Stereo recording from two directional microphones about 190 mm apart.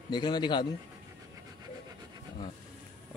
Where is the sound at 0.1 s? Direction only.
25° left (ahead or behind).